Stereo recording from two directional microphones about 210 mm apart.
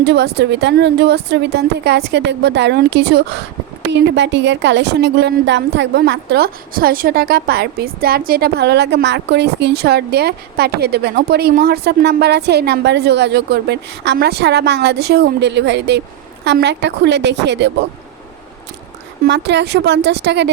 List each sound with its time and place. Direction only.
0.0 s a woman's voice: 50° right (ahead or behind)
19.2 s a woman's voice: 55° right (ahead or behind)